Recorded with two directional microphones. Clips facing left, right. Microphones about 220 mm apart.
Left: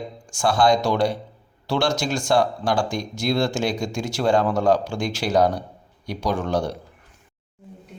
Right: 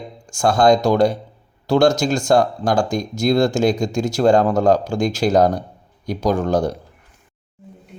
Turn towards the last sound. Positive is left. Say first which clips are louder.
# right 5 dB
turn(degrees=-40)  # may be behind; listen again after turning